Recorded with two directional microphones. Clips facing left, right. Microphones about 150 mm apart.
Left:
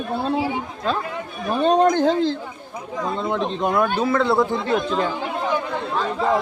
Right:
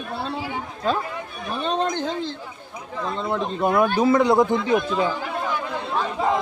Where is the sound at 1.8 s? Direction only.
55° left (ahead or behind).